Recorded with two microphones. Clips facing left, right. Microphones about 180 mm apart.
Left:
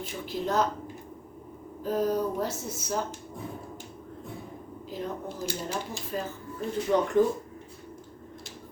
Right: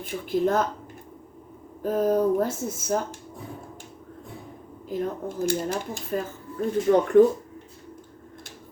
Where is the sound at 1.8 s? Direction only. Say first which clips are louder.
Right 5 dB; 50° right (ahead or behind).